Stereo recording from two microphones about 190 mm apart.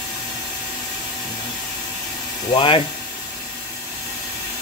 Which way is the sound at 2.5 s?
25° left (ahead or behind).